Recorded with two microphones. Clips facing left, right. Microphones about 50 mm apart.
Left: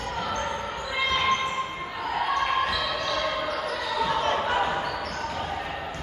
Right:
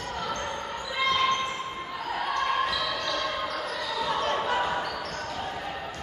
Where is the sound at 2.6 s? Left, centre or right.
Centre.